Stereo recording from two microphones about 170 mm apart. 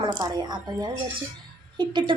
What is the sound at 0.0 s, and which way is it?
Speech, 25° right (ahead or behind).